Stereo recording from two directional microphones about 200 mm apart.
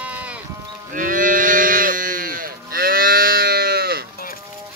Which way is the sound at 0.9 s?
40° right (ahead or behind).